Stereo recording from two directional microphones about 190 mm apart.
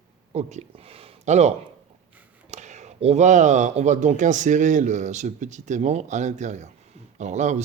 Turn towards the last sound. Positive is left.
turn(degrees=-35)  # may be behind; listen again after turning